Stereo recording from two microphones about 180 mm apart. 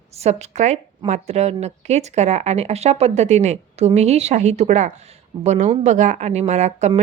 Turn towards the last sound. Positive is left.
turn(degrees=-40)  # may be behind; listen again after turning